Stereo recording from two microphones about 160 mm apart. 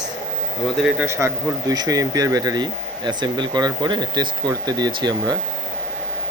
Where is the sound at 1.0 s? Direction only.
15° right (ahead or behind).